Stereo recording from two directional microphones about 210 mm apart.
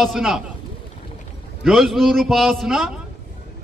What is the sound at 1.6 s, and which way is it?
Speech, centre (ahead or behind).